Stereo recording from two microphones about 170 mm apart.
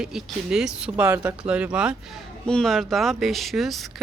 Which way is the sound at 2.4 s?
5° left (ahead or behind).